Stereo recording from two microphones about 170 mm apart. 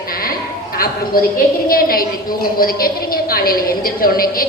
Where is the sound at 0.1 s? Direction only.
60° left (ahead or behind).